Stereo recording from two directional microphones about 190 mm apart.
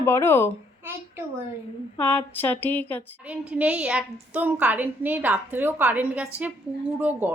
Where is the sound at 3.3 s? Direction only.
5° right (ahead or behind).